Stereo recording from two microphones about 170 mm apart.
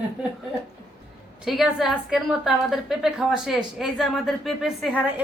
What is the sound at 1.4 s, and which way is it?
Speech, centre (ahead or behind).